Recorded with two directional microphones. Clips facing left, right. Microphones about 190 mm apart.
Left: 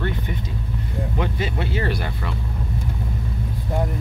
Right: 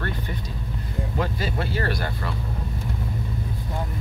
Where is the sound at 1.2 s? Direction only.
20° left (ahead or behind).